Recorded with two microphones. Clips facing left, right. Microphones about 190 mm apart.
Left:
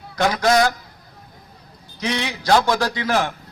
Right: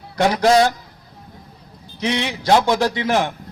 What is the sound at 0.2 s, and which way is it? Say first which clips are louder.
Speech: right 3 dB; 30° right (ahead or behind).